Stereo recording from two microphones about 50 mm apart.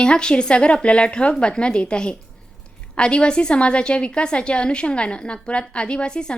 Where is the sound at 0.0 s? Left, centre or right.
Centre.